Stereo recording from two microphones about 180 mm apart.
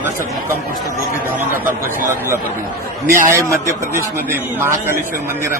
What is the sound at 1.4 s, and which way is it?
Speech, 10° right (ahead or behind).